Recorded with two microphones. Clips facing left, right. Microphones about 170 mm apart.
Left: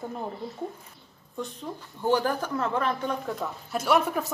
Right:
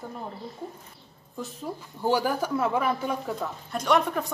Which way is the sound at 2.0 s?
10° right (ahead or behind).